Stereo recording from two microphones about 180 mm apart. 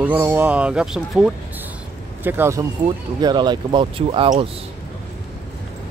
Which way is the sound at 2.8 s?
25° right (ahead or behind).